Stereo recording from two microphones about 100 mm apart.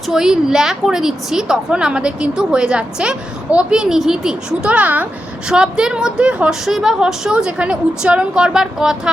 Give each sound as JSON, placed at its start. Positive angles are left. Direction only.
{"t": 0.1, "sound": "a woman's voice", "side_deg": -5}